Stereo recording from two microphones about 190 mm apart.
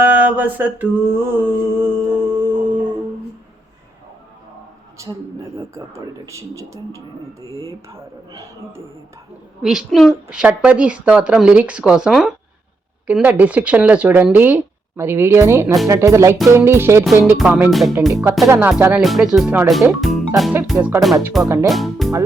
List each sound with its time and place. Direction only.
0.0 s mantra: 10° right (ahead or behind)
5.0 s speech: 15° right (ahead or behind)
6.2 s speech: 15° right (ahead or behind)
9.6 s a woman's voice: 5° right (ahead or behind)
18.1 s a woman's voice: 15° right (ahead or behind)
20.7 s speech: 15° right (ahead or behind)
21.2 s a woman's voice: centre (ahead or behind)